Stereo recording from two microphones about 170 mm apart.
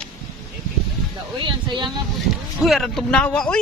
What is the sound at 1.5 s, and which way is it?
Speech, 25° right (ahead or behind).